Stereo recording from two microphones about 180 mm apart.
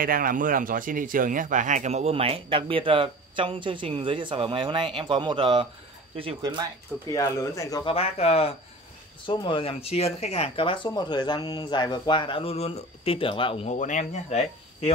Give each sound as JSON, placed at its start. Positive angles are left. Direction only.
{"t": 0.0, "sound": "speech", "side_deg": -50}
{"t": 7.1, "sound": "speech", "side_deg": 15}
{"t": 7.8, "sound": "speech", "side_deg": 35}